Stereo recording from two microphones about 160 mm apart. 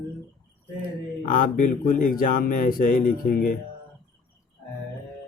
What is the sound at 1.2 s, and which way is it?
Speech, 60° left (ahead or behind).